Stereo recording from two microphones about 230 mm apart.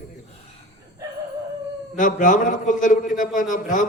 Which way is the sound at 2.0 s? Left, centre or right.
Left.